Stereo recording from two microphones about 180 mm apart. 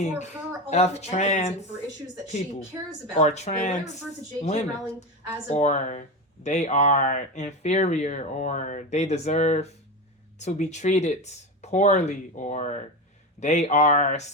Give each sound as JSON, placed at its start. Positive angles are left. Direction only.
{"t": 0.0, "sound": "speech", "side_deg": 40}
{"t": 3.2, "sound": "speech", "side_deg": 40}